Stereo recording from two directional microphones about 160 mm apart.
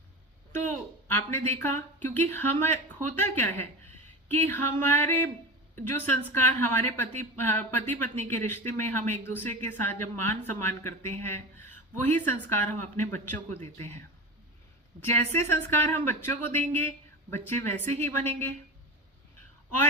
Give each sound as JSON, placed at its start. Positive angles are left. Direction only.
{"t": 1.0, "sound": "a woman's voice", "side_deg": 10}
{"t": 15.0, "sound": "speech", "side_deg": 15}